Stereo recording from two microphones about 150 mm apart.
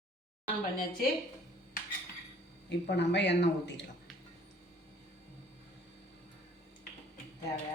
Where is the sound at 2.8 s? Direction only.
90° left.